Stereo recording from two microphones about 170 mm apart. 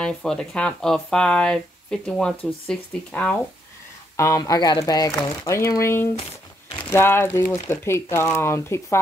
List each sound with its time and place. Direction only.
0.0 s speech: 5° left (ahead or behind)
4.2 s speech: 20° left (ahead or behind)